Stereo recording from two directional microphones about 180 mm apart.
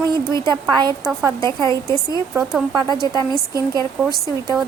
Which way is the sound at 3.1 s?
20° right (ahead or behind).